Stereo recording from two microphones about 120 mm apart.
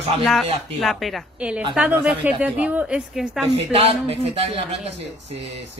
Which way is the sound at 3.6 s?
55° right (ahead or behind).